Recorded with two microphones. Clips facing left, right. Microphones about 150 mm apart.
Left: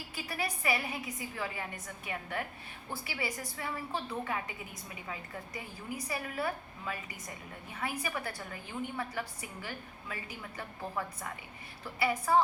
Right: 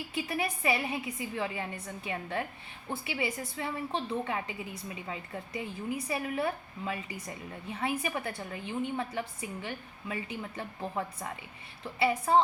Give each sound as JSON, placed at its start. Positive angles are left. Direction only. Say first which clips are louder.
{"t": 0.1, "sound": "a woman's voice", "louder": "right 4 dB", "side_deg": -25}